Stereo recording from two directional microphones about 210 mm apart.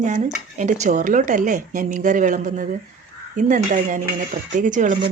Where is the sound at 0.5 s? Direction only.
35° right (ahead or behind).